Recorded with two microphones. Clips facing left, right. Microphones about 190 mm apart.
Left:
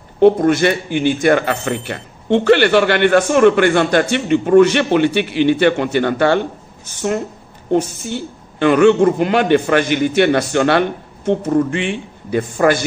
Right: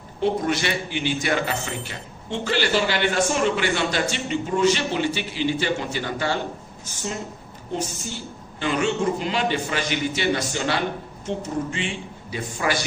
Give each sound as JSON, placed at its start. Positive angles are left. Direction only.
{"t": 0.2, "sound": "a man's voice", "side_deg": 55}
{"t": 7.7, "sound": "a man's voice", "side_deg": 60}